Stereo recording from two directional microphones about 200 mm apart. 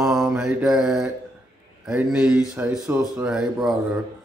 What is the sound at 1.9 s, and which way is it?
Speech, 5° right (ahead or behind).